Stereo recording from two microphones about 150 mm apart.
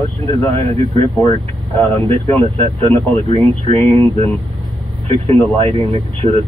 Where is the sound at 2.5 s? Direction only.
40° right (ahead or behind).